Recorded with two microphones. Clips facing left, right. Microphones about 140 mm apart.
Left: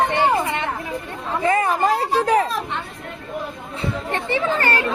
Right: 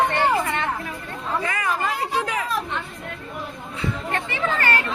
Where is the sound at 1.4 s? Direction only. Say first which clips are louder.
Left 10 dB; 30° left (ahead or behind).